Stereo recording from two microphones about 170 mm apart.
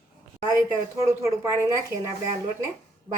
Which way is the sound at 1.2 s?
15° right (ahead or behind).